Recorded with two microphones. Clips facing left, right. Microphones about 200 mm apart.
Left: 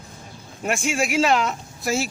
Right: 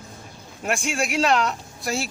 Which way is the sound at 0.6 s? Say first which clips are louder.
Left 2 dB; centre (ahead or behind).